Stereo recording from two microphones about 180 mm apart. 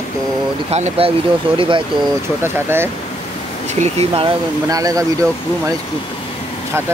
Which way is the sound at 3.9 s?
30° right (ahead or behind).